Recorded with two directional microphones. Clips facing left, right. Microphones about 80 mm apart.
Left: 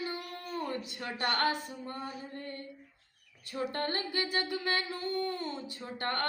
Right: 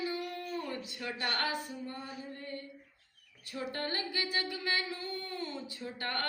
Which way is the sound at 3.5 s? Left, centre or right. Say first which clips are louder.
Left 3 dB; left.